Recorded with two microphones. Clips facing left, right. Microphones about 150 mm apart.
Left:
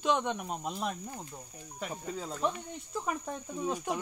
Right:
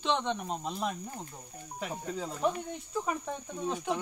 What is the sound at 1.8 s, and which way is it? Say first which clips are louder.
Speech: right 2 dB; 5° right (ahead or behind).